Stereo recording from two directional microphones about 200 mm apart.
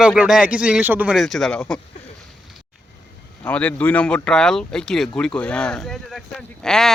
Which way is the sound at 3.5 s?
10° left (ahead or behind).